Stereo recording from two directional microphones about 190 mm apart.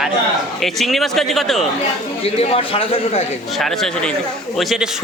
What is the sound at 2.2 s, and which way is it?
A man's voice, 30° left (ahead or behind).